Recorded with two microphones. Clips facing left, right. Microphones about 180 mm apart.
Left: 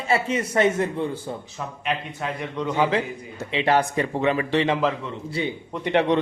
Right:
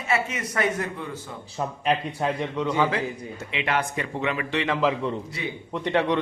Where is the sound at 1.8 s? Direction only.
35° right (ahead or behind).